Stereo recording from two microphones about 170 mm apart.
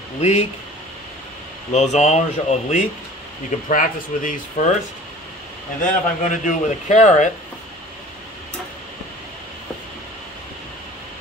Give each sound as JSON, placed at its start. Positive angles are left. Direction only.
{"t": 0.2, "sound": "speech", "side_deg": 40}
{"t": 1.7, "sound": "a man's voice", "side_deg": 40}
{"t": 5.8, "sound": "a man's voice", "side_deg": 45}